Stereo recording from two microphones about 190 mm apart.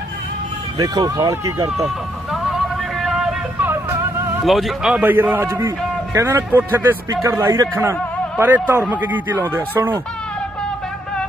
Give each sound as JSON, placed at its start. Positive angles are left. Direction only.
{"t": 0.7, "sound": "speech", "side_deg": -20}
{"t": 3.0, "sound": "vehicle", "side_deg": 0}
{"t": 4.5, "sound": "speech", "side_deg": 0}